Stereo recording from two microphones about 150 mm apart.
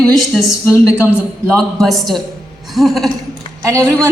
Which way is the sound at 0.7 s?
20° left (ahead or behind).